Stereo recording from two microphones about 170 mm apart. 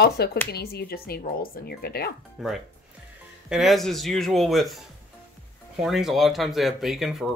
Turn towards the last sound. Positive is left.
turn(degrees=0)  # may be behind; listen again after turning